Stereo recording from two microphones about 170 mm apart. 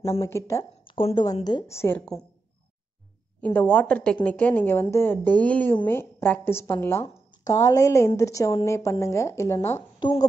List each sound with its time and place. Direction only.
0.2 s a woman's voice: 20° left (ahead or behind)
0.8 s a woman's voice: 30° left (ahead or behind); by 2.2 s 5° left (ahead or behind)
3.3 s a woman's voice: 10° left (ahead or behind)
9.9 s a woman's voice: 25° left (ahead or behind)